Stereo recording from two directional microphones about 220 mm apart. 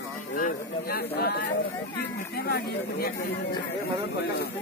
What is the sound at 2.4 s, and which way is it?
Speech, 45° left (ahead or behind).